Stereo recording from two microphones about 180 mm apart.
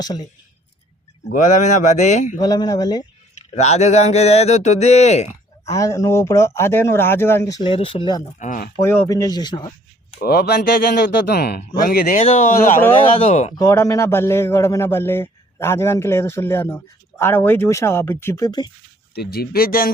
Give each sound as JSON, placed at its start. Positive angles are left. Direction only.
{"t": 0.0, "sound": "speech", "side_deg": 20}
{"t": 1.3, "sound": "speech", "side_deg": 45}
{"t": 2.4, "sound": "speech", "side_deg": 20}
{"t": 3.5, "sound": "speech", "side_deg": 40}
{"t": 5.7, "sound": "a man's voice", "side_deg": 15}
{"t": 8.2, "sound": "speech", "side_deg": 45}
{"t": 8.8, "sound": "speech", "side_deg": 15}
{"t": 10.2, "sound": "speech", "side_deg": 60}
{"t": 12.2, "sound": "speech", "side_deg": 35}
{"t": 12.5, "sound": "speech", "side_deg": 45}
{"t": 13.6, "sound": "a man's voice", "side_deg": 20}
{"t": 19.1, "sound": "speech", "side_deg": 60}